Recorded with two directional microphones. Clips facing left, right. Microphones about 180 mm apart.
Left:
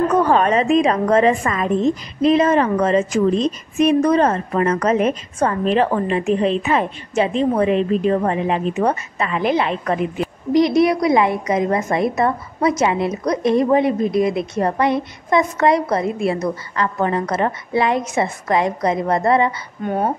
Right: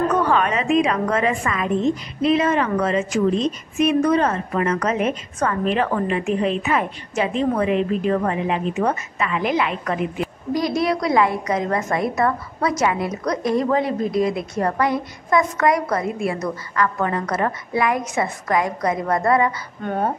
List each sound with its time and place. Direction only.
0.2 s a woman's voice: 40° left (ahead or behind)
19.8 s speech: 10° left (ahead or behind)